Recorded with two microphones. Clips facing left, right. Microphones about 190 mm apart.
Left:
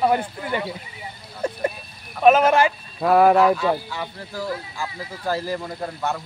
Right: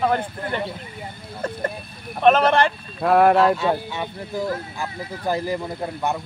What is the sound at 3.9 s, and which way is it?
Speech, 20° right (ahead or behind).